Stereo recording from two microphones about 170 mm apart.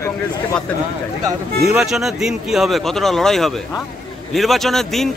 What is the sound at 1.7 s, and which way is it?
Speech, centre (ahead or behind).